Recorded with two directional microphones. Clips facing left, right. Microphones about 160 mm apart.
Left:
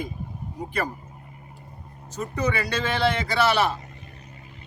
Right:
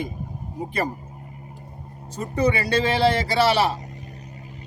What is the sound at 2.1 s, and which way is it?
Speech, 30° right (ahead or behind).